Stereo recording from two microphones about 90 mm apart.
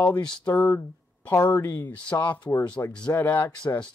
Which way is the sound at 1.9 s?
15° left (ahead or behind).